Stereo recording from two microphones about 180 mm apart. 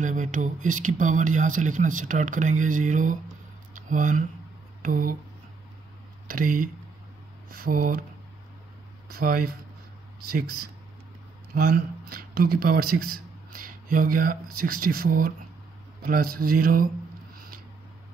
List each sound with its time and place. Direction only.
0.0 s speech: 45° right (ahead or behind)
3.7 s a sound: 45° right (ahead or behind)
4.8 s speech: 50° right (ahead or behind)
6.2 s speech: 50° right (ahead or behind)
9.1 s speech: 55° right (ahead or behind)
11.5 s speech: 55° right (ahead or behind)